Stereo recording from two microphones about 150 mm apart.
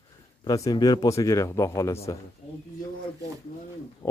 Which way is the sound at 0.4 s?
25° left (ahead or behind).